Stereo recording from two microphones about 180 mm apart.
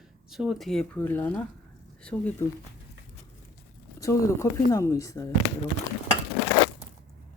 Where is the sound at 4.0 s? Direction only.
15° left (ahead or behind).